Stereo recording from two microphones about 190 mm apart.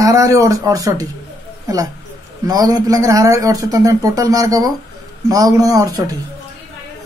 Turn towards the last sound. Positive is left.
turn(degrees=-20)  # may be behind; listen again after turning